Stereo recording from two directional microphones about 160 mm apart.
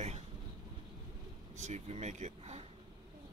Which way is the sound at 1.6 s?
45° right (ahead or behind).